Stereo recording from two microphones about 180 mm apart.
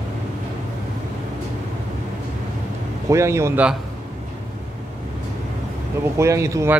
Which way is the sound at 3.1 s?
15° right (ahead or behind).